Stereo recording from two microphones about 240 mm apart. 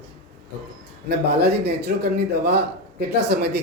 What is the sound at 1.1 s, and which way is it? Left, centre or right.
Speech, right.